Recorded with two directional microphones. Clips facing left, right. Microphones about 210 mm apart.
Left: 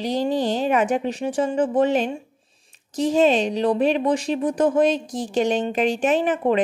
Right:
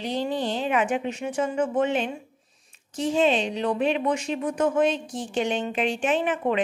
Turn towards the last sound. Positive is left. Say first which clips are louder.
# left 4 dB
turn(degrees=40)  # may be behind; listen again after turning